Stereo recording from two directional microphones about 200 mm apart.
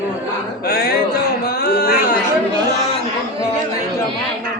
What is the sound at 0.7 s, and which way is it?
Speech, 50° left (ahead or behind).